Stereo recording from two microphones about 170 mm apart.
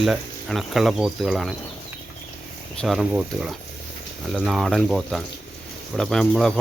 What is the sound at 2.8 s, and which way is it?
Speech, centre (ahead or behind).